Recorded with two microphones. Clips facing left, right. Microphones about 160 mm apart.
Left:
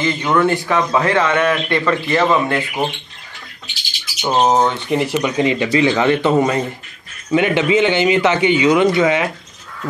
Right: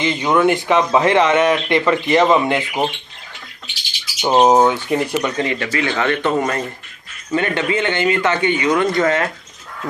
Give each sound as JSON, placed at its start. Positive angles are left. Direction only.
{"t": 0.0, "sound": "a man's voice", "side_deg": -20}
{"t": 4.2, "sound": "a man's voice", "side_deg": -10}
{"t": 5.3, "sound": "speech", "side_deg": 15}